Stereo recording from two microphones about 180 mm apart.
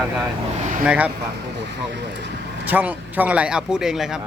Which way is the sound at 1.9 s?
75° right (ahead or behind).